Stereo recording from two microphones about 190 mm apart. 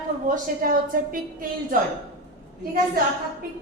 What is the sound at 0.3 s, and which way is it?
A woman's voice, 45° right (ahead or behind).